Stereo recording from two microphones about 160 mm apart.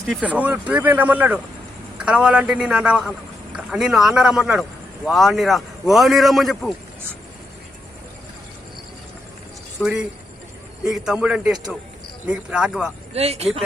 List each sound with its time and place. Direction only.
0.1 s a man's voice: 10° right (ahead or behind)
9.8 s a man's voice: 5° right (ahead or behind)
13.1 s speech: 40° right (ahead or behind)